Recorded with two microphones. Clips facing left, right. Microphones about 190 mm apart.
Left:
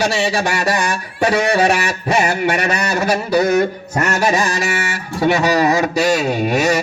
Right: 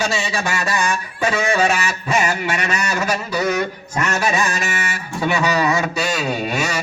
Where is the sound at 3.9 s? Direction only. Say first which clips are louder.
Left 3 dB; 50° left (ahead or behind).